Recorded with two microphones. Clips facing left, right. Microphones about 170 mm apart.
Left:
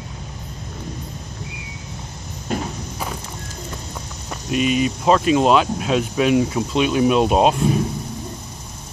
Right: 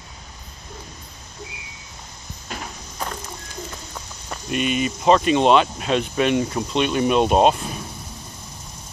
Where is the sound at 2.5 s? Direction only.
50° left (ahead or behind).